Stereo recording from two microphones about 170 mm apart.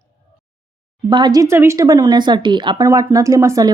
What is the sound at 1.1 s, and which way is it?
Speech, 25° right (ahead or behind).